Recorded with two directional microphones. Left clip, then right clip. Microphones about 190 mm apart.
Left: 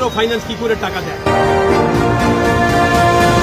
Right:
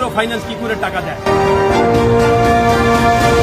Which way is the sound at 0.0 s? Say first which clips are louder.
Left 1 dB; 20° right (ahead or behind).